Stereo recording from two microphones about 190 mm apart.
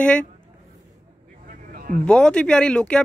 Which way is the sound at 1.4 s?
50° right (ahead or behind).